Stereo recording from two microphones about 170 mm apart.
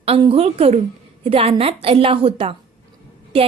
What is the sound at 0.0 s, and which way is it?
A woman's voice, 35° right (ahead or behind).